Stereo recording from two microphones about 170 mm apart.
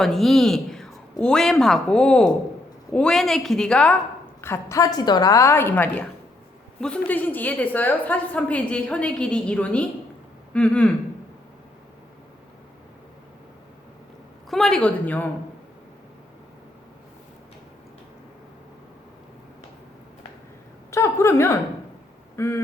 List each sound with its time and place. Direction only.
0.0 s a woman's voice: centre (ahead or behind)
14.5 s a woman's voice: 5° left (ahead or behind)
20.9 s a woman's voice: 15° left (ahead or behind)
22.4 s quack: 15° left (ahead or behind)